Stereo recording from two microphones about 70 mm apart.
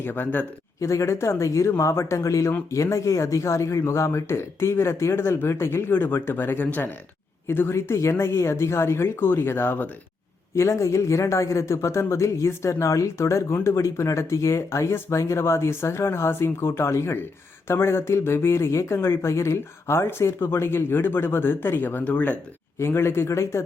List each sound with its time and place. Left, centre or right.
0.0 s speech: left
0.8 s a man's voice: left
7.4 s speech: left
10.5 s a man's voice: left
22.8 s speech: left